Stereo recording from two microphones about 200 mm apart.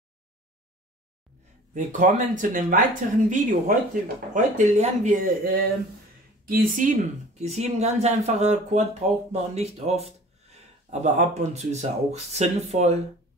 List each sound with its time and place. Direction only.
1.7 s speech: 40° right (ahead or behind)